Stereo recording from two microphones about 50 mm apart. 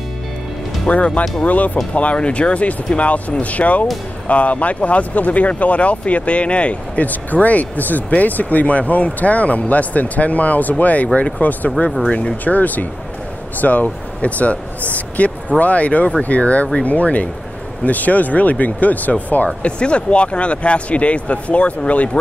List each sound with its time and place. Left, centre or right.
0.8 s speech: left
11.1 s speech: left
12.4 s speech: left
15.0 s a sound: left
15.6 s speech: left